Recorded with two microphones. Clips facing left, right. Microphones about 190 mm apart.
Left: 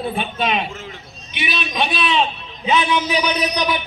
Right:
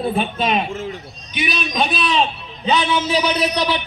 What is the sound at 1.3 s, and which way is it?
A man's voice, 40° right (ahead or behind).